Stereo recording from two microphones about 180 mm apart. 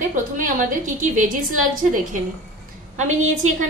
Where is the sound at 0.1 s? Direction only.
50° right (ahead or behind).